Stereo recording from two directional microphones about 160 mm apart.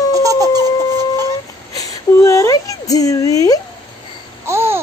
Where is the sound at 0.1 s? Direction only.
20° right (ahead or behind).